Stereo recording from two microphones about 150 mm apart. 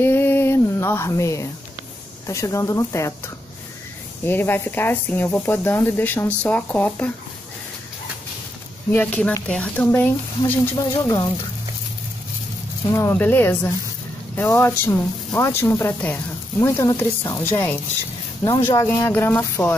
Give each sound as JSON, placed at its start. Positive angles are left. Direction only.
{"t": 0.0, "sound": "a sound", "side_deg": 15}
{"t": 2.2, "sound": "speech", "side_deg": 20}
{"t": 4.2, "sound": "speech", "side_deg": 15}
{"t": 8.9, "sound": "speech", "side_deg": 10}
{"t": 12.9, "sound": "speech", "side_deg": 15}